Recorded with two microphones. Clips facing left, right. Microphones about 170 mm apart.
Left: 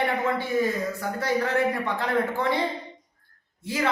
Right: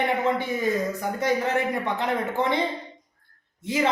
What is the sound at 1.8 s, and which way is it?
Speech, 20° right (ahead or behind).